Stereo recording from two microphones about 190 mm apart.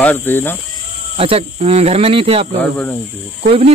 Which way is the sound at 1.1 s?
30° right (ahead or behind).